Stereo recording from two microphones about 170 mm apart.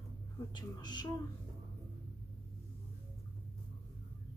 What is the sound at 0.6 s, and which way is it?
Speech, 25° left (ahead or behind).